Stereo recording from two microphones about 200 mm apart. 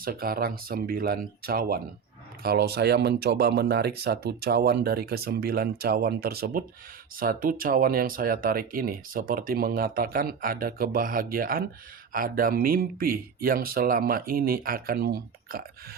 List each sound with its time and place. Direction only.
0.0 s speech: 45° right (ahead or behind)